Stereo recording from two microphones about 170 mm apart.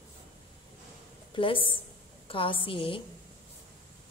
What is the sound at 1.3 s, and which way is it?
A woman's voice, 30° left (ahead or behind).